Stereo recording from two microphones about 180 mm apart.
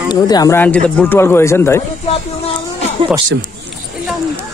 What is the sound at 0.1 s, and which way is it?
Speech, 20° left (ahead or behind).